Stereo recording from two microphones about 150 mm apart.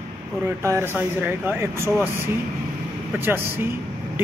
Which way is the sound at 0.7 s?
15° right (ahead or behind).